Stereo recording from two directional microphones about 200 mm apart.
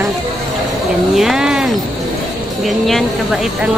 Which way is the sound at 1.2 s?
Centre (ahead or behind).